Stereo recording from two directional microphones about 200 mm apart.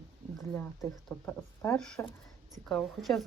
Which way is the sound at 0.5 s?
10° left (ahead or behind).